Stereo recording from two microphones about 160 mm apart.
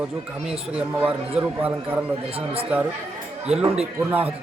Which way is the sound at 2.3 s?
35° right (ahead or behind).